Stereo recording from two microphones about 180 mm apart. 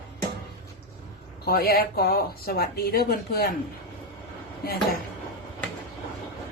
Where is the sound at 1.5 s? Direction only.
55° left (ahead or behind).